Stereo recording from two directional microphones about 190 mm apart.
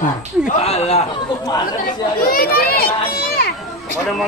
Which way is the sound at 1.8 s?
50° left (ahead or behind).